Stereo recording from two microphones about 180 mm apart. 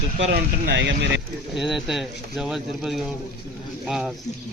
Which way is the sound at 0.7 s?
75° right (ahead or behind).